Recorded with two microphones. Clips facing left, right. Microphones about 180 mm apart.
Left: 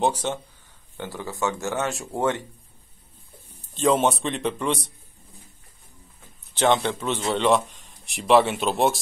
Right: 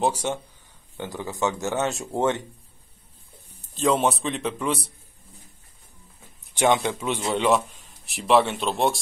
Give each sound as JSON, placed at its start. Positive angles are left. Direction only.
{"t": 0.0, "sound": "a man's voice", "side_deg": -10}
{"t": 3.7, "sound": "a man's voice", "side_deg": 0}
{"t": 6.5, "sound": "a man's voice", "side_deg": -10}